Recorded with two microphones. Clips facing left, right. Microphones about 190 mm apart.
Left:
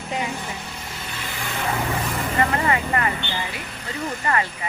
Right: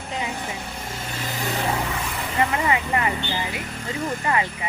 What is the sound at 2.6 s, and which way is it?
Speech, 15° right (ahead or behind).